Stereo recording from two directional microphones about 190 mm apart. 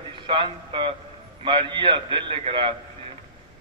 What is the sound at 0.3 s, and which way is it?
A man's voice, 25° right (ahead or behind).